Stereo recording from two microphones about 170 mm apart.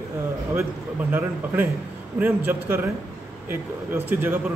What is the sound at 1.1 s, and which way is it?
Speech, 10° right (ahead or behind).